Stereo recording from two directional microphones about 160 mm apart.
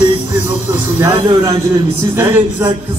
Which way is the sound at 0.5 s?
15° right (ahead or behind).